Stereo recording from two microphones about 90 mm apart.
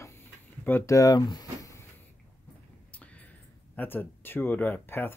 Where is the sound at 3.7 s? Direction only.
20° left (ahead or behind).